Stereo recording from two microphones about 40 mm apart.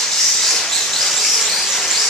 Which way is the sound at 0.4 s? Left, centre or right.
Centre.